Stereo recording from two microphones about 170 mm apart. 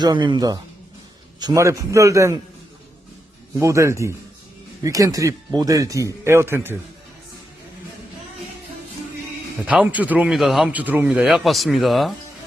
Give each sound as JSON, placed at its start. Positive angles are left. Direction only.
{"t": 0.0, "sound": "speech", "side_deg": -25}
{"t": 3.6, "sound": "a man's voice", "side_deg": -15}
{"t": 9.6, "sound": "speech", "side_deg": -10}